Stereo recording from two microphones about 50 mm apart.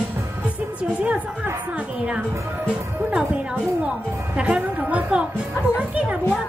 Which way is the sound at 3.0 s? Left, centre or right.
Right.